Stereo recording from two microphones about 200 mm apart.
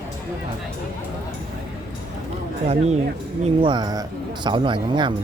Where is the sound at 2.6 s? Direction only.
35° right (ahead or behind).